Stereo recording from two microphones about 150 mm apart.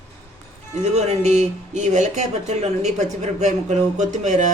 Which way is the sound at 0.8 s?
45° right (ahead or behind).